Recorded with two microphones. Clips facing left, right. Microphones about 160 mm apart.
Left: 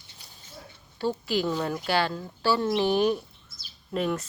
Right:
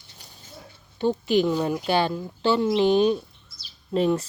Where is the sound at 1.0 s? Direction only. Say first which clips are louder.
Right 6 dB; 20° right (ahead or behind).